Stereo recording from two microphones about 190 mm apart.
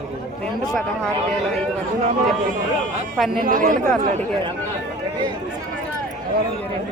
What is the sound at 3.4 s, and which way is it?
Speech, 45° right (ahead or behind).